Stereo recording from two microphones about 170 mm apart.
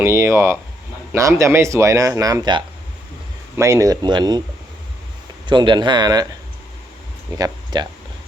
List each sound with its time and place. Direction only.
0.0 s speech: 15° right (ahead or behind)
5.5 s speech: 25° right (ahead or behind)
7.3 s speech: 25° right (ahead or behind)